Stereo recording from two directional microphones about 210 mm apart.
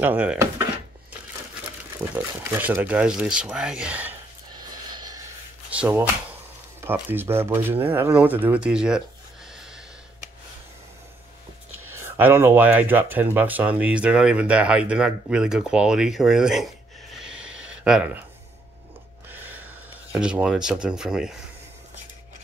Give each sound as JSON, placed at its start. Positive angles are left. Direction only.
{"t": 0.0, "sound": "speech", "side_deg": -5}
{"t": 2.1, "sound": "speech", "side_deg": -10}
{"t": 4.5, "sound": "snort", "side_deg": -20}
{"t": 5.7, "sound": "speech", "side_deg": -5}
{"t": 11.8, "sound": "speech", "side_deg": -10}
{"t": 19.2, "sound": "a sound", "side_deg": -10}